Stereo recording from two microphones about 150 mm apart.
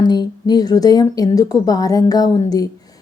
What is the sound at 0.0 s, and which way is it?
A woman's voice, 30° left (ahead or behind).